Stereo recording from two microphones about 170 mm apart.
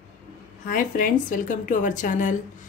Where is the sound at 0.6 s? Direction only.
50° left (ahead or behind).